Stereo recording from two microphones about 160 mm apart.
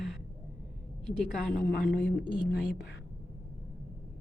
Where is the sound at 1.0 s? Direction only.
5° left (ahead or behind).